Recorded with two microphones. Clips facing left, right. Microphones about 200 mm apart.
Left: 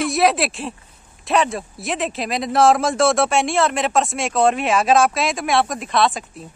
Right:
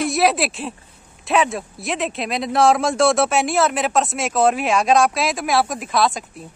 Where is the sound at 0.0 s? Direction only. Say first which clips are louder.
Even; centre (ahead or behind).